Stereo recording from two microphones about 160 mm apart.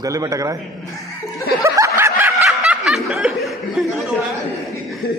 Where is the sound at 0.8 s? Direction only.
Centre (ahead or behind).